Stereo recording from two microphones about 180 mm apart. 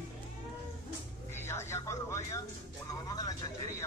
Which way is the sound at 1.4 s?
15° left (ahead or behind).